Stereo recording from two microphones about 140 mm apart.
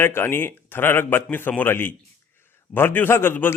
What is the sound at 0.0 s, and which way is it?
A man's voice, 15° left (ahead or behind).